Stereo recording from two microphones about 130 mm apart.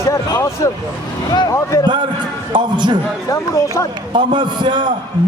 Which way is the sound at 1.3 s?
30° left (ahead or behind).